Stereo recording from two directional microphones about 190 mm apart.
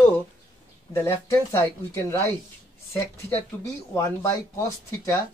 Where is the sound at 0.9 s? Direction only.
15° left (ahead or behind).